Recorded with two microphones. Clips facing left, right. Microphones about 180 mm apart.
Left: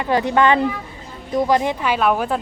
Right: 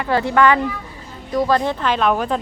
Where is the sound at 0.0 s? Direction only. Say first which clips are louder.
Even; 20° left (ahead or behind).